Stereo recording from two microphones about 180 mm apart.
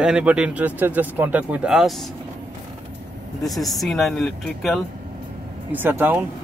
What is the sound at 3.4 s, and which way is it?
Speech, centre (ahead or behind).